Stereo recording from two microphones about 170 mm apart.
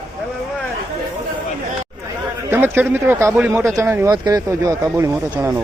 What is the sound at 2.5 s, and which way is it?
A man's voice, 10° right (ahead or behind).